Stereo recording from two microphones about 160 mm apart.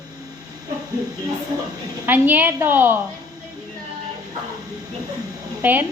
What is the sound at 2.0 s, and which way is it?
Speech, 10° right (ahead or behind).